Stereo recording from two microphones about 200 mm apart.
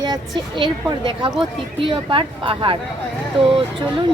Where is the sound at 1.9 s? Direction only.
25° right (ahead or behind).